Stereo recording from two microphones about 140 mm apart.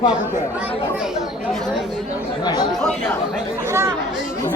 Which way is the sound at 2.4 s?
30° left (ahead or behind).